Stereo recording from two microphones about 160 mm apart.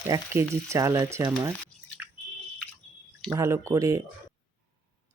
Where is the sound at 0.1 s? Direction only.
20° right (ahead or behind).